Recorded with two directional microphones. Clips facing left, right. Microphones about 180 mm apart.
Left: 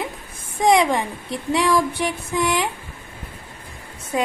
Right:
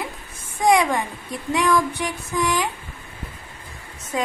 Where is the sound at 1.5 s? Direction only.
30° left (ahead or behind).